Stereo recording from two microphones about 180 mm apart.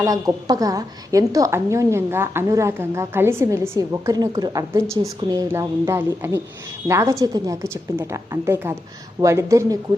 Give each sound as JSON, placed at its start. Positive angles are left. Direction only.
{"t": 0.0, "sound": "a woman's voice", "side_deg": -20}